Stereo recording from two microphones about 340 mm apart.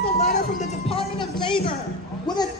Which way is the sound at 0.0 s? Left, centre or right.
Left.